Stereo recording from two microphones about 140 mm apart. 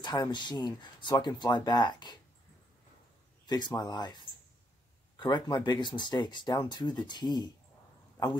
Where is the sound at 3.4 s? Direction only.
30° left (ahead or behind).